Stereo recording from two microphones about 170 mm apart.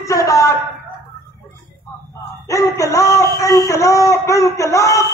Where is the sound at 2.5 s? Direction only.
20° left (ahead or behind).